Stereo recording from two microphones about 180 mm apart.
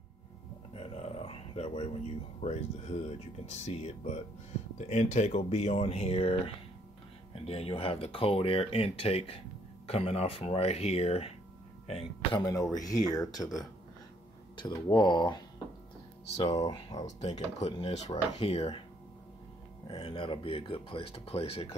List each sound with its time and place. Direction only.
0.7 s a sound: 35° left (ahead or behind)
2.4 s speech: 40° left (ahead or behind); by 13.5 s 20° left (ahead or behind)
14.6 s speech: 25° left (ahead or behind)
16.6 s speech: 20° left (ahead or behind)
17.0 s speech: 40° left (ahead or behind)
19.9 s speech: 30° left (ahead or behind)